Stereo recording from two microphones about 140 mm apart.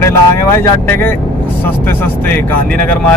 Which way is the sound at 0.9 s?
15° left (ahead or behind).